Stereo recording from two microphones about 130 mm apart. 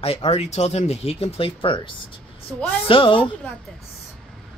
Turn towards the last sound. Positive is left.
turn(degrees=40)  # may be behind; listen again after turning